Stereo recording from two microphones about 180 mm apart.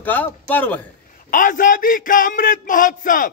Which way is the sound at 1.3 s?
45° left (ahead or behind).